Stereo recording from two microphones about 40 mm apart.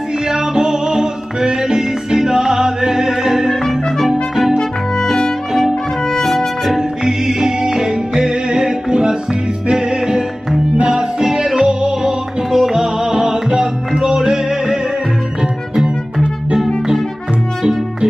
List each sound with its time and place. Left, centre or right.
0.3 s music: centre
4.1 s trumpet: centre
6.2 s music: centre
6.8 s music: centre